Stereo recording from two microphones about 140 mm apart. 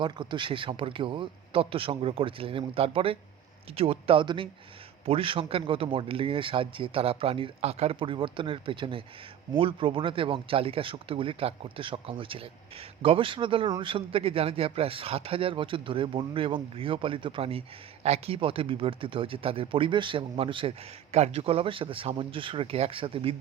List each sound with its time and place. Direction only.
0.0 s speech: 35° right (ahead or behind)